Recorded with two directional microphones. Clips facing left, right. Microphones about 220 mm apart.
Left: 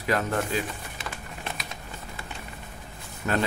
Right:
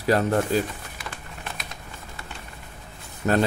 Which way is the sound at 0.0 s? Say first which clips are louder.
Right 5 dB; 35° right (ahead or behind).